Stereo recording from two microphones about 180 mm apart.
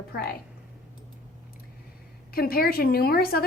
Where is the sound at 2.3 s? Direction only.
55° left (ahead or behind).